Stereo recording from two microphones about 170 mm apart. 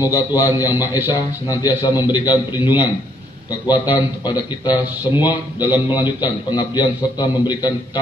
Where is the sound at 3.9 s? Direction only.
25° left (ahead or behind).